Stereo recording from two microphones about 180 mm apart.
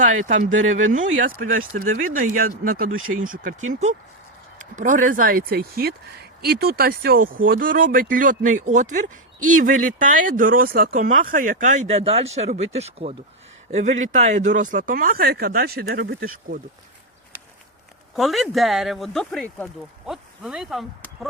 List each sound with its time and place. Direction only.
0.0 s speech: 45° right (ahead or behind)
18.2 s speech: centre (ahead or behind)